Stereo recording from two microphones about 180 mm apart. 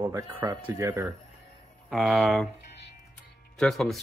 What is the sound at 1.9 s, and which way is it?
Speech, centre (ahead or behind).